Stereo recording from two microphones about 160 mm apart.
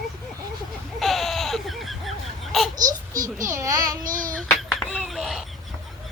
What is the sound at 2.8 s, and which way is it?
Babbling, 20° right (ahead or behind).